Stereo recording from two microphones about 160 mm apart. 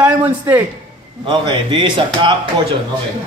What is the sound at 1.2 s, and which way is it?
Speech, 30° right (ahead or behind).